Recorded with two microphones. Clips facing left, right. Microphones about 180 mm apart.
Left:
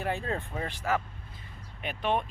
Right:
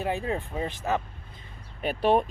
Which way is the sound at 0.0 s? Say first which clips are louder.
Right 3 dB; 15° right (ahead or behind).